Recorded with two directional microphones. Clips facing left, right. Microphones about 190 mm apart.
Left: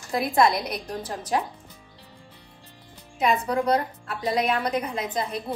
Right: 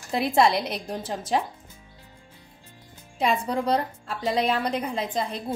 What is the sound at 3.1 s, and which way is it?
A woman's voice, 30° right (ahead or behind).